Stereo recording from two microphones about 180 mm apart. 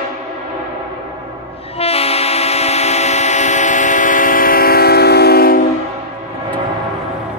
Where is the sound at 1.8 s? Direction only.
35° left (ahead or behind); by 5.6 s 60° left (ahead or behind).